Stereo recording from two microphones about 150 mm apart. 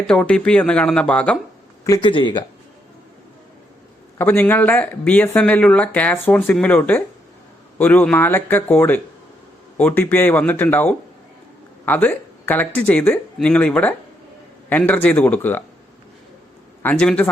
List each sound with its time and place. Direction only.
0.1 s speech: 5° left (ahead or behind)
2.0 s speech: 35° left (ahead or behind)
4.2 s speech: 15° left (ahead or behind)
16.8 s speech: 5° left (ahead or behind)